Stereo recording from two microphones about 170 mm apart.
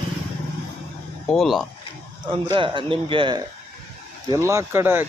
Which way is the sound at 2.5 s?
30° right (ahead or behind).